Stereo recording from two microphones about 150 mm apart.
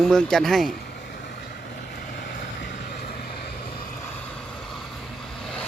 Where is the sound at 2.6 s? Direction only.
90° left.